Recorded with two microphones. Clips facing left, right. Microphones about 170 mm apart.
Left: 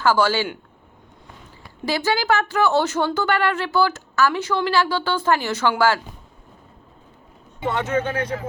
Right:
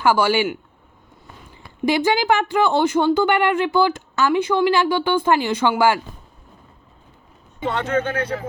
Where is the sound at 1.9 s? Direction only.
20° right (ahead or behind).